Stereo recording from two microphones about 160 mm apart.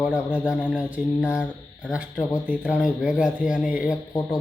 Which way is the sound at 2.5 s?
5° right (ahead or behind).